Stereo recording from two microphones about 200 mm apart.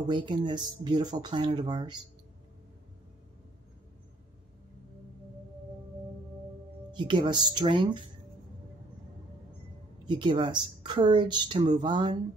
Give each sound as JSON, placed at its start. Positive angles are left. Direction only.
{"t": 0.1, "sound": "a woman's voice", "side_deg": -20}
{"t": 6.9, "sound": "a woman's voice", "side_deg": -25}
{"t": 10.0, "sound": "a woman's voice", "side_deg": -25}